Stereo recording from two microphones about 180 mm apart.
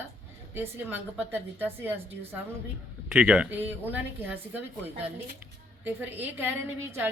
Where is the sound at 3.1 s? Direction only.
5° right (ahead or behind).